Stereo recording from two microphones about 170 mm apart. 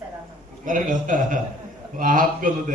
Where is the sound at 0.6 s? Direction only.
50° right (ahead or behind).